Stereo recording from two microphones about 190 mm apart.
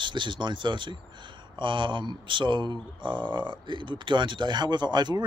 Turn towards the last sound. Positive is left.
turn(degrees=-25)  # may be behind; listen again after turning